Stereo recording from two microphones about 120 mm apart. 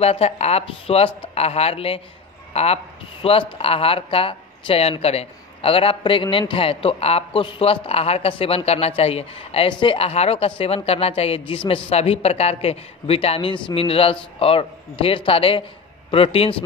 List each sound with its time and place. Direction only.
0.0 s speech: 60° left (ahead or behind)
11.9 s speech: 60° left (ahead or behind)